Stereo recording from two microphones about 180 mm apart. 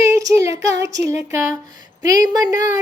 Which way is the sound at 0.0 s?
20° right (ahead or behind).